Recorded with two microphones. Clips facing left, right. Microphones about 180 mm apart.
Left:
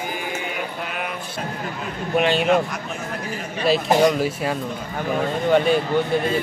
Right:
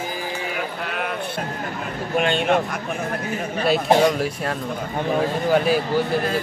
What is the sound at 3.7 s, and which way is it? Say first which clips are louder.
Speech: even; centre (ahead or behind).